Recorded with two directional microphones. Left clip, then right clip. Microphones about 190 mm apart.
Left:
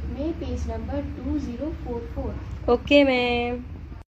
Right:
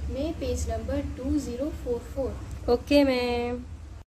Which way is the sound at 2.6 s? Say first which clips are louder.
Left 4 dB; 15° right (ahead or behind).